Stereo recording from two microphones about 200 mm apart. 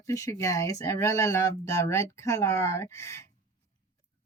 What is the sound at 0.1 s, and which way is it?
Speech, 15° left (ahead or behind).